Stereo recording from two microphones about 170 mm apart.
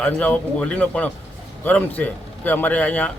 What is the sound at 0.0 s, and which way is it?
A man's voice, 10° left (ahead or behind).